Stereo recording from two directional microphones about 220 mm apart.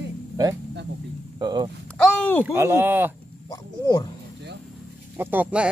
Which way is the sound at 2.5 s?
10° right (ahead or behind).